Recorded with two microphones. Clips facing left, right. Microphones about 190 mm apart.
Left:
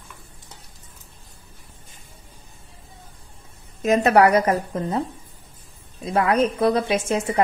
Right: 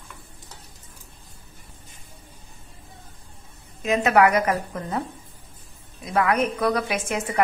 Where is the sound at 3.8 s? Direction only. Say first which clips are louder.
Left 3 dB; 40° left (ahead or behind).